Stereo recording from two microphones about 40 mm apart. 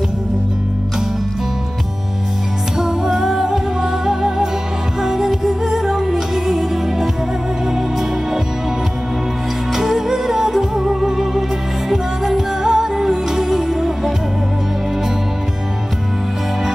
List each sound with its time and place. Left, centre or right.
2.8 s music: centre
9.8 s music: centre